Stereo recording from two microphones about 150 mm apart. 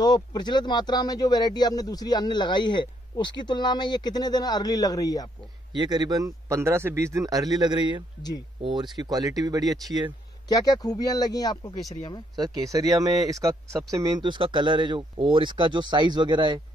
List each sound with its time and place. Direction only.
0.0 s speech: 25° left (ahead or behind)
5.7 s speech: 30° right (ahead or behind)
10.5 s speech: 25° left (ahead or behind)
12.4 s speech: 25° right (ahead or behind)